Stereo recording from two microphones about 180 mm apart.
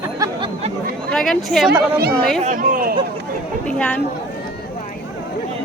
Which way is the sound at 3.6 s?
10° left (ahead or behind).